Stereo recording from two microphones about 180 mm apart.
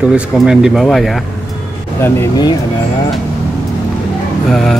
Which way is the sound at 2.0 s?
20° left (ahead or behind).